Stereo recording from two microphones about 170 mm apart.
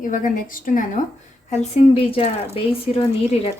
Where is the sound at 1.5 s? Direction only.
40° left (ahead or behind).